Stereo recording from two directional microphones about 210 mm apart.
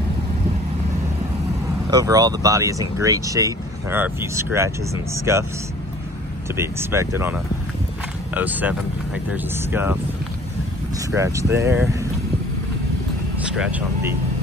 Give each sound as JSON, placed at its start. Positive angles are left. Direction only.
{"t": 1.9, "sound": "speech", "side_deg": -15}
{"t": 6.5, "sound": "speech", "side_deg": -10}
{"t": 8.4, "sound": "speech", "side_deg": -10}
{"t": 11.1, "sound": "speech", "side_deg": -15}
{"t": 13.6, "sound": "speech", "side_deg": -5}